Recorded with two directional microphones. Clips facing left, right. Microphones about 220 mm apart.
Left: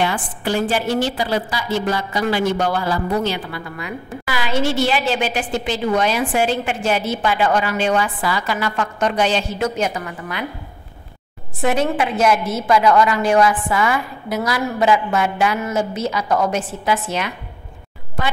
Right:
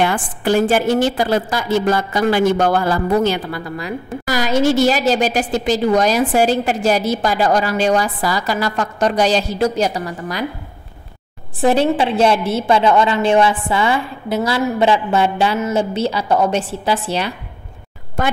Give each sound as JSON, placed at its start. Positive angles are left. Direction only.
{"t": 0.0, "sound": "a woman's voice", "side_deg": -50}
{"t": 11.6, "sound": "a woman's voice", "side_deg": -30}